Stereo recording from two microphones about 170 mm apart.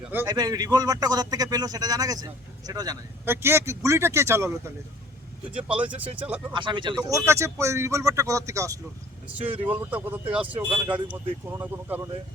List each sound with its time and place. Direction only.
0.3 s speech: 20° right (ahead or behind)
6.5 s speech: 30° right (ahead or behind)
7.3 s speech: 15° right (ahead or behind)